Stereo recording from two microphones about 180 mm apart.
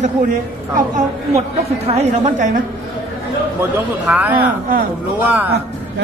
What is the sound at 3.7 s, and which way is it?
A man's voice, 10° right (ahead or behind).